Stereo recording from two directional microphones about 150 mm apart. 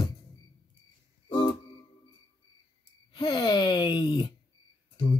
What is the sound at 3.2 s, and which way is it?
Groan, 30° left (ahead or behind).